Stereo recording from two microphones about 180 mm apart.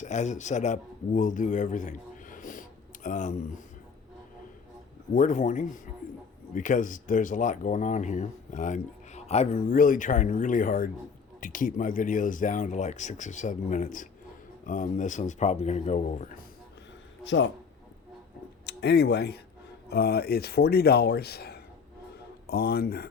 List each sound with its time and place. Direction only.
0.0 s speech: 40° left (ahead or behind)
5.1 s speech: 45° left (ahead or behind)
17.2 s speech: 85° left
18.6 s speech: 65° left (ahead or behind)